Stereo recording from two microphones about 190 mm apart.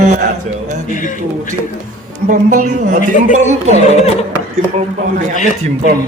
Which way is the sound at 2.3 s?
40° right (ahead or behind).